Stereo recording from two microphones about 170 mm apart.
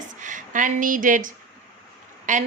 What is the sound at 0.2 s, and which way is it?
A woman's voice, 50° right (ahead or behind).